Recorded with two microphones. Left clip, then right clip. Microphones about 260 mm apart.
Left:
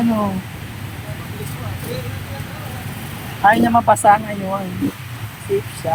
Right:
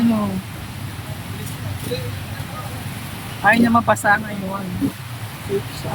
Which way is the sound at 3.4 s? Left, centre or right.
Centre.